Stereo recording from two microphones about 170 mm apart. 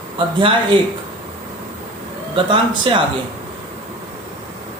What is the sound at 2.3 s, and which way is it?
Speech, 30° right (ahead or behind).